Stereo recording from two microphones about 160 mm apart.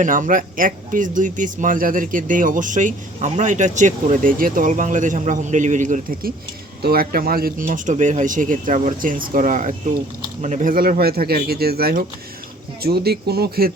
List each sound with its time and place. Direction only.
0.0 s speech: 55° right (ahead or behind)
6.8 s speech: 70° right (ahead or behind)